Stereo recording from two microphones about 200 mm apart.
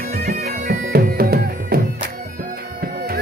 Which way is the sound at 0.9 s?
50° right (ahead or behind).